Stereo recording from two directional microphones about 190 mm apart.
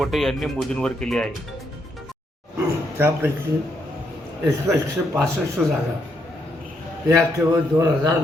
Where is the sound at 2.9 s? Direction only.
10° right (ahead or behind).